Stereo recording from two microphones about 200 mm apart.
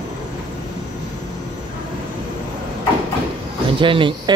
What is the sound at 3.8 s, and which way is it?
Speech, 25° right (ahead or behind).